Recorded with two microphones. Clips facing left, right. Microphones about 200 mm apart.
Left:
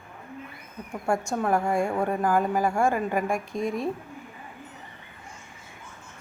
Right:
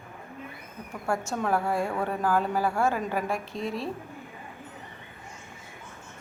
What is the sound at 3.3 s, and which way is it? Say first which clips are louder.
Speech: left 3 dB; 50° left (ahead or behind).